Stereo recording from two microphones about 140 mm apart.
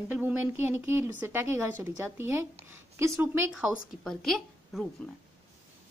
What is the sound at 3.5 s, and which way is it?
A woman's voice, 5° right (ahead or behind).